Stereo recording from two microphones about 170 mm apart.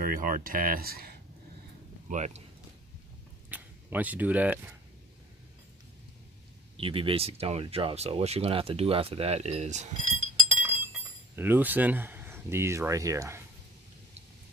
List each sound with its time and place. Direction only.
0.0 s speech: 55° right (ahead or behind)
2.0 s speech: 45° right (ahead or behind)
3.4 s speech: 10° right (ahead or behind)
6.8 s speech: 30° right (ahead or behind)
10.5 s chink: 10° right (ahead or behind)